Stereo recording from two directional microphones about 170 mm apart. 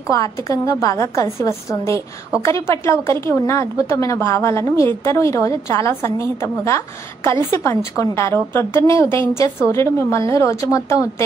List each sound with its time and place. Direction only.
0.1 s a woman's voice: 20° left (ahead or behind)